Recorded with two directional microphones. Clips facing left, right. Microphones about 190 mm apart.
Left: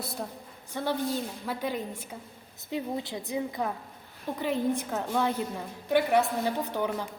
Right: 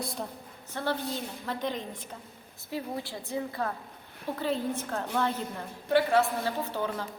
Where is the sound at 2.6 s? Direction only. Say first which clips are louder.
Left 3 dB; 20° left (ahead or behind).